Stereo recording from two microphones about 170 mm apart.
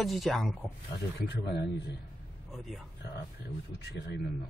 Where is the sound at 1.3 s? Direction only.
80° left.